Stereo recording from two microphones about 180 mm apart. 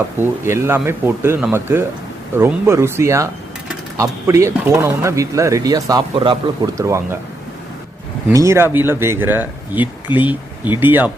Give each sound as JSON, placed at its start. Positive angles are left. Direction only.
{"t": 0.2, "sound": "speech", "side_deg": -15}
{"t": 8.3, "sound": "speech", "side_deg": -15}